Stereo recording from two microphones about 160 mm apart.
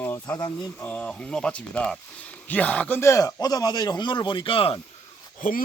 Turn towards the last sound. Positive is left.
turn(degrees=60)  # may be behind; listen again after turning